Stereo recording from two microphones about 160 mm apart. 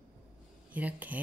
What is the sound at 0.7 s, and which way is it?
Speech, 10° right (ahead or behind).